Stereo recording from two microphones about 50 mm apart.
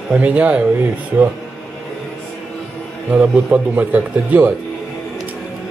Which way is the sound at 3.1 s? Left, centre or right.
Right.